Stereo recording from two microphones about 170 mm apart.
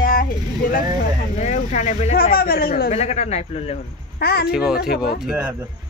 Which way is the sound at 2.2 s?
60° left (ahead or behind).